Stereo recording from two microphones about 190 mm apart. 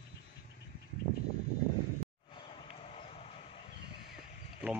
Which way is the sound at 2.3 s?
25° left (ahead or behind).